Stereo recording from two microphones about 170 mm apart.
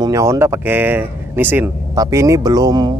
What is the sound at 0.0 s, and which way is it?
Speech, 20° right (ahead or behind).